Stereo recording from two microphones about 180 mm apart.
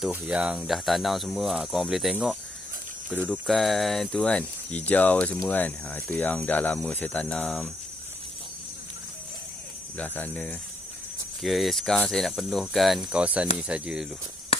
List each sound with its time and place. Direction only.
0.0 s speech: 5° right (ahead or behind)
9.9 s speech: 10° left (ahead or behind); by 14.0 s 5° right (ahead or behind)
14.5 s a sound: 35° left (ahead or behind)